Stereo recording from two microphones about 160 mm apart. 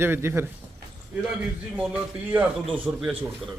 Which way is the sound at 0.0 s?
15° right (ahead or behind).